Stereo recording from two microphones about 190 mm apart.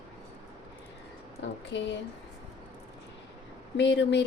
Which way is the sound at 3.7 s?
70° left (ahead or behind).